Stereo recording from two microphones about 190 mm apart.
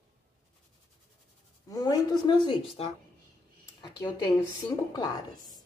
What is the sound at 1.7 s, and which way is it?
Speech, 20° left (ahead or behind).